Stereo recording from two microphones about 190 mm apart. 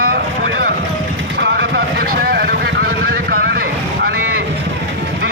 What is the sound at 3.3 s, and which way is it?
Vehicle, 50° right (ahead or behind).